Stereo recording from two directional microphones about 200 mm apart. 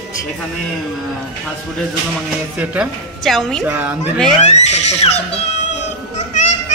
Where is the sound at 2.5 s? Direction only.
Centre (ahead or behind).